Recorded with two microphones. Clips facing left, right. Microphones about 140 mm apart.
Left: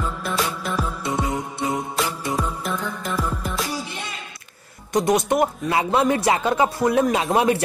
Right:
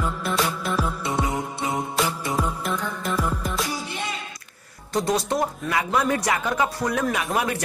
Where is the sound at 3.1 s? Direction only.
10° left (ahead or behind).